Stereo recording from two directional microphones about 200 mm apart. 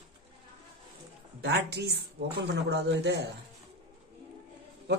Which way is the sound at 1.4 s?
55° right (ahead or behind).